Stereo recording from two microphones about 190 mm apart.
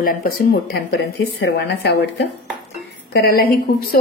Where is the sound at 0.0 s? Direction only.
50° left (ahead or behind).